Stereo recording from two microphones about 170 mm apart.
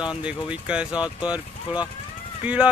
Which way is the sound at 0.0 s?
5° right (ahead or behind).